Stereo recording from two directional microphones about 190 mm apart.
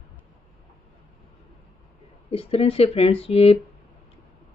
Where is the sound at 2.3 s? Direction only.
30° left (ahead or behind).